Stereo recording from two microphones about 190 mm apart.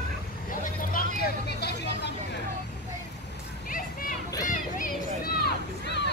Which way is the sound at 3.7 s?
45° left (ahead or behind).